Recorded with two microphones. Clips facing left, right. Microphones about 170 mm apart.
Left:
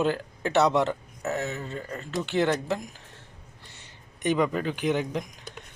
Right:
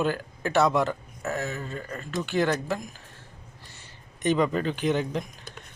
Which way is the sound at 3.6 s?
20° left (ahead or behind).